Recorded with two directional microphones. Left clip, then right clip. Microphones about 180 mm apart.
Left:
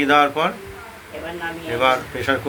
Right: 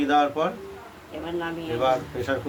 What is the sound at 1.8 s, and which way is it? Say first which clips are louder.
Speech: left 5 dB; 20° left (ahead or behind).